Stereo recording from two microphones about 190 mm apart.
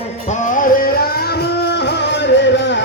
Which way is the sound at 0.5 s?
45° left (ahead or behind).